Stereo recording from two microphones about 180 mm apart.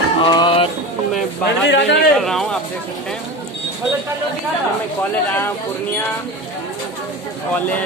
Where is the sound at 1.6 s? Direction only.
80° left.